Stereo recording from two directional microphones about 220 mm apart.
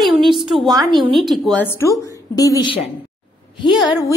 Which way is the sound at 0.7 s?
15° right (ahead or behind).